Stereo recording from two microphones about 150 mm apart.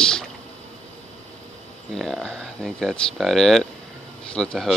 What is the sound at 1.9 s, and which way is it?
Speech, centre (ahead or behind).